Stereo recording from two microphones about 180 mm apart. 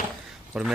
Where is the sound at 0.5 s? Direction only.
5° right (ahead or behind).